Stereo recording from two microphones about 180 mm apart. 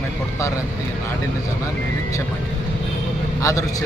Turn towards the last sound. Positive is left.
turn(degrees=20)  # may be behind; listen again after turning